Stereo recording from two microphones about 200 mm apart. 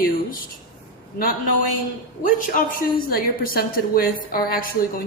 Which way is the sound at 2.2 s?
45° left (ahead or behind).